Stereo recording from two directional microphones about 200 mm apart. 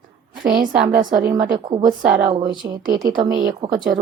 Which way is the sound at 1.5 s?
20° right (ahead or behind).